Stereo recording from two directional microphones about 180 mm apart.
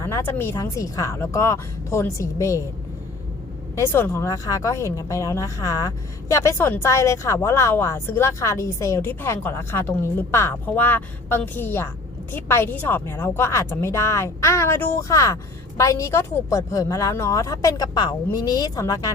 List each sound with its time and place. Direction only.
0.0 s speech: 15° left (ahead or behind)
3.8 s speech: 15° left (ahead or behind)